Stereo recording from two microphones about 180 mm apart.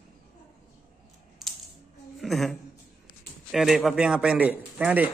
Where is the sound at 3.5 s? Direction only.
Centre (ahead or behind).